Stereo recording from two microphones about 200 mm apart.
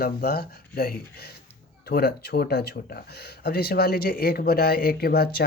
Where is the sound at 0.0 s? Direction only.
50° left (ahead or behind).